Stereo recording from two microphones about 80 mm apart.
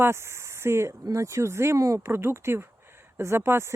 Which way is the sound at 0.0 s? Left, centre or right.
Right.